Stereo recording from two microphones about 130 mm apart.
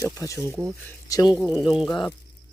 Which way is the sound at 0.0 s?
25° left (ahead or behind).